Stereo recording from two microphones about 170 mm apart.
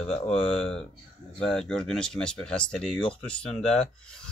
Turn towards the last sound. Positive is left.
turn(degrees=5)  # may be behind; listen again after turning